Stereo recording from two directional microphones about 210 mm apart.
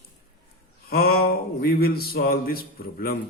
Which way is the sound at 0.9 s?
45° left (ahead or behind).